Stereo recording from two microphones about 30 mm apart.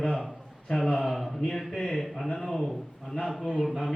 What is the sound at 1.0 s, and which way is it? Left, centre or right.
Speech, centre.